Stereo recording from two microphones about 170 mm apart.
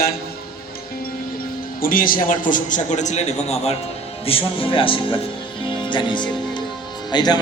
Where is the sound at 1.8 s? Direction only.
55° left (ahead or behind).